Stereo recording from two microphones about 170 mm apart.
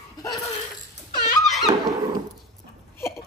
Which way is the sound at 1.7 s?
20° right (ahead or behind).